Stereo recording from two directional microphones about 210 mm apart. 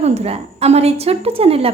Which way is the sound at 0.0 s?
30° right (ahead or behind).